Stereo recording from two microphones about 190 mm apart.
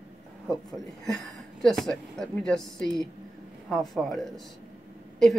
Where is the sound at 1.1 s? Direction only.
Centre (ahead or behind).